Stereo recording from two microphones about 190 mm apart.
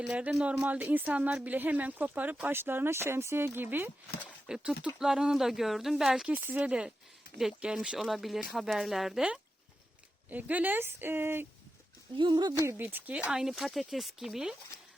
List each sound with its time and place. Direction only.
0.0 s a woman's voice: 5° right (ahead or behind)
12.1 s speech: 25° right (ahead or behind)
12.6 s speech: 10° right (ahead or behind)